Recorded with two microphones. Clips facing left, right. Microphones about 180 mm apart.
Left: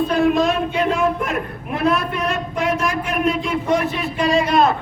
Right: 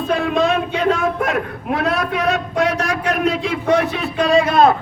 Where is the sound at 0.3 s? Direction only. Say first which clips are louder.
Right 1 dB; 65° right (ahead or behind).